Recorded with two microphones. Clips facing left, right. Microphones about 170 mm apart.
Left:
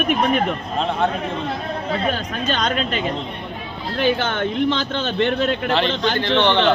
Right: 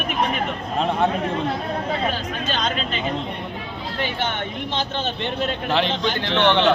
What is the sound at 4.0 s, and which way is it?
Speech, 85° left.